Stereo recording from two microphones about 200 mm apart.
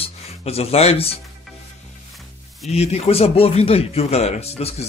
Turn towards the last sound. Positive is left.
turn(degrees=30)  # may be behind; listen again after turning